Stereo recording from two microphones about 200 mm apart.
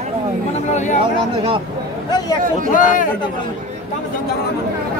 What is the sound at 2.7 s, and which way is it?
Speech, 40° left (ahead or behind).